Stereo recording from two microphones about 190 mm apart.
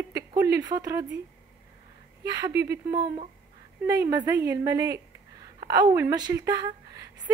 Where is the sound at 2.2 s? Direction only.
20° right (ahead or behind).